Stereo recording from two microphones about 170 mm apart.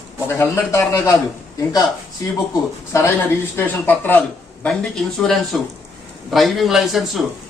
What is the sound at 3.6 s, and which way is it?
A man's voice, 10° left (ahead or behind).